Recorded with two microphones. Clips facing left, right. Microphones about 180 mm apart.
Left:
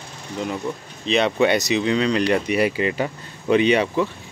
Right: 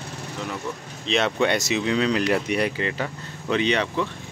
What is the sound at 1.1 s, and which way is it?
Speech, centre (ahead or behind).